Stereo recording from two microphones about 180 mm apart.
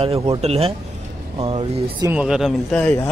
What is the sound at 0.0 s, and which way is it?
Speech, 30° right (ahead or behind).